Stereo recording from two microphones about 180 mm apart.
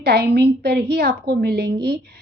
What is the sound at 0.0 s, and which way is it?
A woman's voice, 65° right (ahead or behind).